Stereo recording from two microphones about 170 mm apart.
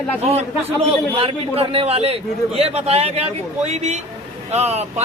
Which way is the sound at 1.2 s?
35° right (ahead or behind).